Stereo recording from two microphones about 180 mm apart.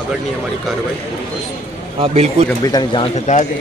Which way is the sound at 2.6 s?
25° left (ahead or behind).